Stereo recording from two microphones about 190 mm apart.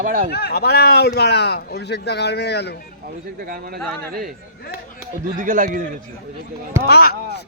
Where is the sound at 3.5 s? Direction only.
50° right (ahead or behind).